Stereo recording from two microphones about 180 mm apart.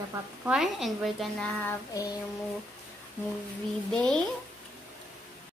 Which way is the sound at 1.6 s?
20° left (ahead or behind).